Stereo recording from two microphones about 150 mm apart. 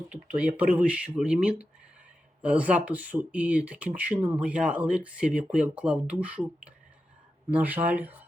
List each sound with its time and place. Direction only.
0.3 s speech: 10° right (ahead or behind)
7.5 s speech: 10° right (ahead or behind)